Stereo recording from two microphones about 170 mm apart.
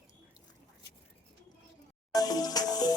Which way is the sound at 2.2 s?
20° left (ahead or behind).